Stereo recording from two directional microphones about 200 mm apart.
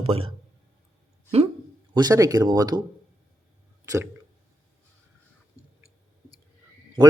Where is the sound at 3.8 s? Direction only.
15° right (ahead or behind).